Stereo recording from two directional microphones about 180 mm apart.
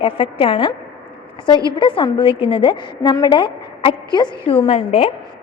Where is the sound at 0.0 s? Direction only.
30° left (ahead or behind).